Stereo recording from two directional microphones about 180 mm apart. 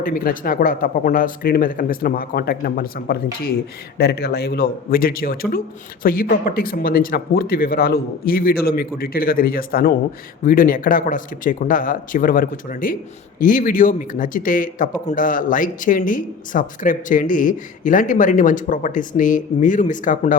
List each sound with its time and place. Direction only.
0.0 s a man's voice: 50° left (ahead or behind)